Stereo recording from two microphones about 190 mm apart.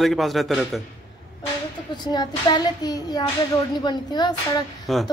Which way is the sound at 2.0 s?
20° left (ahead or behind).